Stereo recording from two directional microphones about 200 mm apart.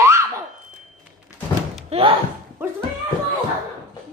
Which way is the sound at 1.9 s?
30° right (ahead or behind).